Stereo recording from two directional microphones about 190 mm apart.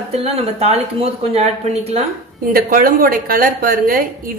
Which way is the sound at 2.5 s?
50° right (ahead or behind).